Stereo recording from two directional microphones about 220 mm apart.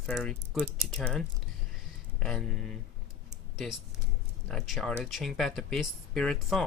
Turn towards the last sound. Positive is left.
turn(degrees=0)  # may be behind; listen again after turning